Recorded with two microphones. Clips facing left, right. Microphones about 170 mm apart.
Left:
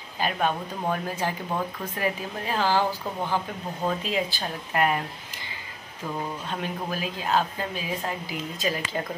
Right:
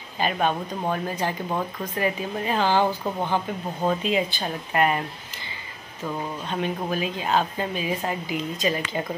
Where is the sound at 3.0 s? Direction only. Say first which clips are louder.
Right 3 dB; 25° right (ahead or behind).